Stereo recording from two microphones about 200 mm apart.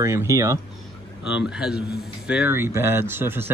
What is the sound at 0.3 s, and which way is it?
Speech, 15° right (ahead or behind).